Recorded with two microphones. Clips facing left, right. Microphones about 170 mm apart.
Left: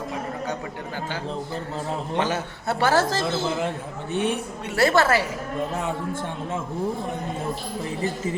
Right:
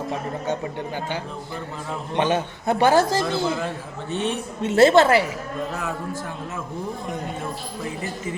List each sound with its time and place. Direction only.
2.1 s a man's voice: 20° right (ahead or behind)
4.1 s speech: 15° left (ahead or behind)
4.6 s a woman's voice: 20° right (ahead or behind)